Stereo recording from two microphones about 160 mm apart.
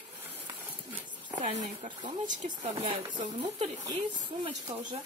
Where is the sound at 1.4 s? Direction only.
45° right (ahead or behind).